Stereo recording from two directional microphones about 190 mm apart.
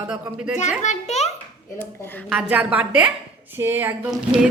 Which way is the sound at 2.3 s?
5° right (ahead or behind).